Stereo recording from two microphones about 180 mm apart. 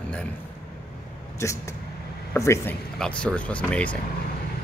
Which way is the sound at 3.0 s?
5° left (ahead or behind).